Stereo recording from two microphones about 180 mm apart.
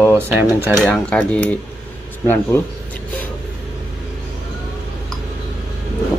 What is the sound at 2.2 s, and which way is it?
Speech, 10° left (ahead or behind).